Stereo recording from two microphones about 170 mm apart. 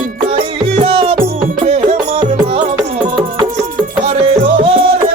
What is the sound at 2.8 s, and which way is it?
Music, 25° right (ahead or behind).